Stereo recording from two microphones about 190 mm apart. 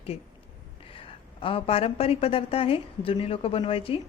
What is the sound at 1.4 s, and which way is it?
A woman's voice, 30° left (ahead or behind).